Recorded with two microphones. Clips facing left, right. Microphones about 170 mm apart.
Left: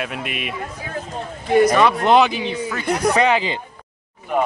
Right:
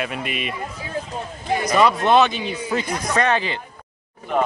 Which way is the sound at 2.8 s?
65° left (ahead or behind).